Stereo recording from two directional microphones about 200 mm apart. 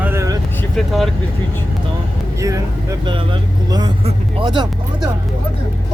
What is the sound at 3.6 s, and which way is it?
Speech, 20° right (ahead or behind).